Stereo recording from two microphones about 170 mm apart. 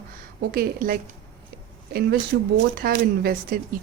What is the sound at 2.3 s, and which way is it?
A woman's voice, 65° right (ahead or behind).